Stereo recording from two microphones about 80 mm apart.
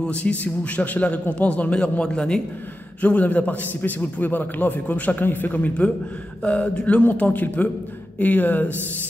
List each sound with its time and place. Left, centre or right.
0.0 s a man's voice: centre